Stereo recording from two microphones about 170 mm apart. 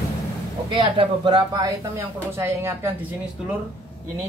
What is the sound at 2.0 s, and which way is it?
Speech, 15° right (ahead or behind).